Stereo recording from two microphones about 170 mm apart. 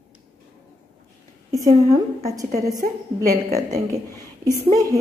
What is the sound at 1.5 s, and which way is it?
A woman's voice, 20° right (ahead or behind).